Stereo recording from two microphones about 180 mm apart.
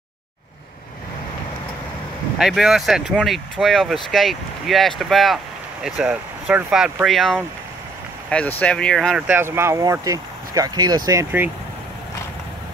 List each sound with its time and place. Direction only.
2.3 s speech: centre (ahead or behind)
9.3 s speech: 15° right (ahead or behind)